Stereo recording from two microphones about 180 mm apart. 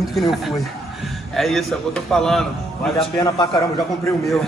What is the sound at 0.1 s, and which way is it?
A man's voice, centre (ahead or behind).